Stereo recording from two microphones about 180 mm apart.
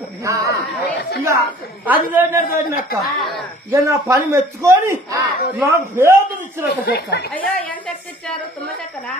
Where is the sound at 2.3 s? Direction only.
50° left (ahead or behind).